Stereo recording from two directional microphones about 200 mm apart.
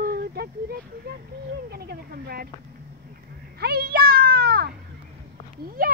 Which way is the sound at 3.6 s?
50° right (ahead or behind).